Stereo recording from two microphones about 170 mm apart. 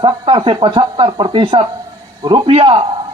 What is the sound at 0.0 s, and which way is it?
A man's voice, 30° right (ahead or behind).